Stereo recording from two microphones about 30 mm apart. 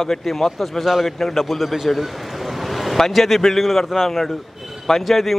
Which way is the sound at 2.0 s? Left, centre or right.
Centre.